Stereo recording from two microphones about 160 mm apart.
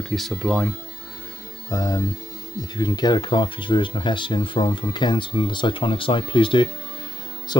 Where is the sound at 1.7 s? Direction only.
20° left (ahead or behind).